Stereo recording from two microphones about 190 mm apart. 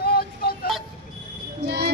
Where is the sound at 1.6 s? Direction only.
60° right (ahead or behind).